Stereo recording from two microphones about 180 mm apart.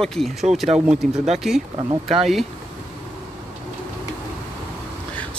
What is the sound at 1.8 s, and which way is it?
Speech, 25° right (ahead or behind).